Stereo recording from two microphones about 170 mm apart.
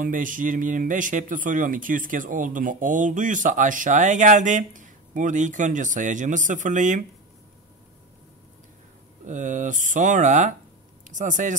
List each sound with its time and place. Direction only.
0.0 s a man's voice: 50° right (ahead or behind)
9.2 s a man's voice: 45° right (ahead or behind)